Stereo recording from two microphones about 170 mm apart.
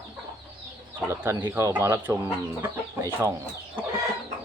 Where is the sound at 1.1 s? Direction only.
15° right (ahead or behind).